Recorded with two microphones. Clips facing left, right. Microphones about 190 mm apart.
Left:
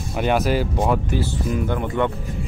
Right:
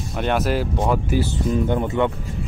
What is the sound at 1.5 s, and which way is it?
Speech, 25° right (ahead or behind).